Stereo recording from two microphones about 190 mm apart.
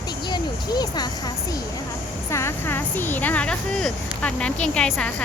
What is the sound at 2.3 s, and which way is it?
Speech, 15° left (ahead or behind).